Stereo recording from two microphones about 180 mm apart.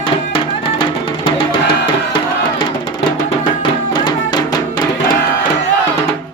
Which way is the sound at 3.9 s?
25° left (ahead or behind).